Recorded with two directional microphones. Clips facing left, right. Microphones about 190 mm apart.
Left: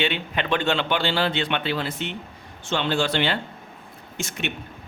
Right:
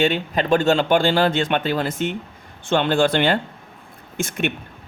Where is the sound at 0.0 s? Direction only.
40° right (ahead or behind).